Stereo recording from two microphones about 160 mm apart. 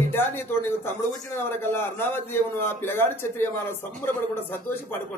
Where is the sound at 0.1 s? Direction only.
15° left (ahead or behind).